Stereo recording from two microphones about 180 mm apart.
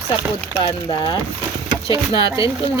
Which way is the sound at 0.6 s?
25° left (ahead or behind).